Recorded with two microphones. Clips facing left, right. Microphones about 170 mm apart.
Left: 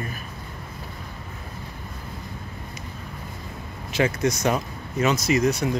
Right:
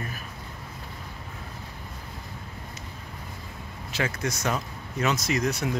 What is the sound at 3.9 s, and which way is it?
Speech, 20° left (ahead or behind).